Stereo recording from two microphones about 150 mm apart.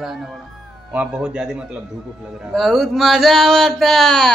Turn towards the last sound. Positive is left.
turn(degrees=5)  # may be behind; listen again after turning